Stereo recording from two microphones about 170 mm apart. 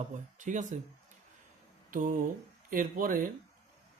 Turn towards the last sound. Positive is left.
turn(degrees=-55)  # may be behind; listen again after turning